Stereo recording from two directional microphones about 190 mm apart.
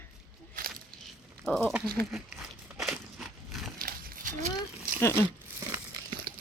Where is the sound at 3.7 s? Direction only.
45° right (ahead or behind).